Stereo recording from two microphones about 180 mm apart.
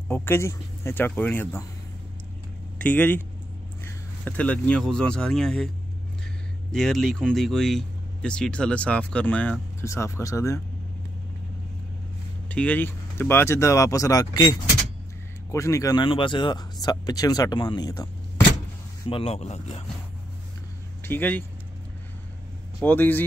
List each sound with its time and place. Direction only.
0.1 s speech: 15° left (ahead or behind)
2.8 s speech: 10° left (ahead or behind)
6.7 s speech: centre (ahead or behind)
12.4 s speech: 10° left (ahead or behind)
19.0 s speech: 30° left (ahead or behind)
21.0 s speech: 10° left (ahead or behind)
22.8 s speech: 10° left (ahead or behind)